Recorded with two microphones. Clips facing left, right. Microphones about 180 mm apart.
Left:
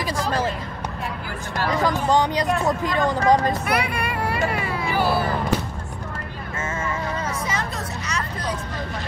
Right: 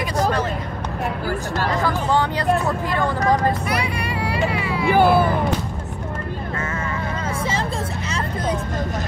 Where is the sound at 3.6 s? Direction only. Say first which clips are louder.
Even; 55° left (ahead or behind).